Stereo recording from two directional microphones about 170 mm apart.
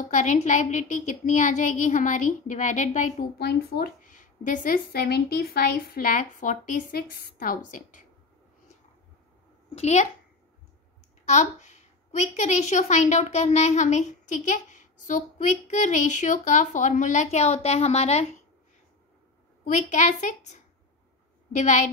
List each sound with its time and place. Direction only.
0.1 s a woman's voice: 45° left (ahead or behind)
3.3 s a woman's voice: 70° left (ahead or behind); by 8.0 s 55° left (ahead or behind)
9.8 s a child's voice: 40° left (ahead or behind)
11.2 s a woman's voice: 45° left (ahead or behind)
19.6 s a woman's voice: 45° left (ahead or behind)